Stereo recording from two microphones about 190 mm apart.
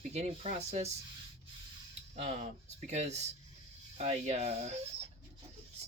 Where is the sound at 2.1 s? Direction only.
35° right (ahead or behind).